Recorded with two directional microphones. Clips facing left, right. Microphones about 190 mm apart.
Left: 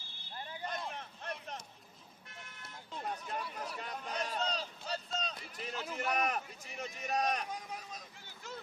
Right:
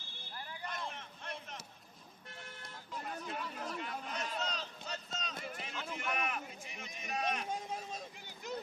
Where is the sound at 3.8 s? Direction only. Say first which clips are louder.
Left 1 dB; 40° left (ahead or behind).